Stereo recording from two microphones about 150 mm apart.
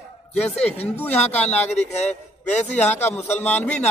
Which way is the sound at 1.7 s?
45° left (ahead or behind).